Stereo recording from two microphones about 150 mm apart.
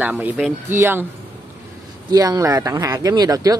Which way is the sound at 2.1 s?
25° right (ahead or behind).